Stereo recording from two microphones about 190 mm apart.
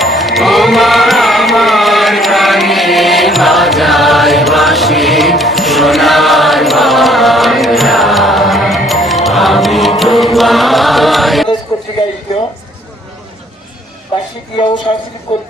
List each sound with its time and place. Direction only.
0.0 s music: centre (ahead or behind)
14.5 s speech: 25° left (ahead or behind)